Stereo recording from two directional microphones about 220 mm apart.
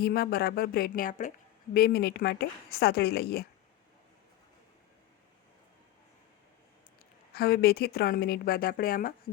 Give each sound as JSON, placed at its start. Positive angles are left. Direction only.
{"t": 0.0, "sound": "a woman's voice", "side_deg": 45}
{"t": 7.3, "sound": "a woman's voice", "side_deg": 45}